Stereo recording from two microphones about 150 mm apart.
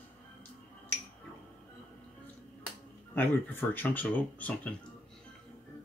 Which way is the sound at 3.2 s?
15° left (ahead or behind).